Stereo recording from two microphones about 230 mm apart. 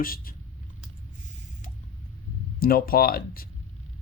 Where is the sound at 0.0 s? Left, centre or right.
Left.